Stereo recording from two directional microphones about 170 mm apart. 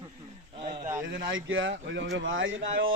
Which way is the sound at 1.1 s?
90° right.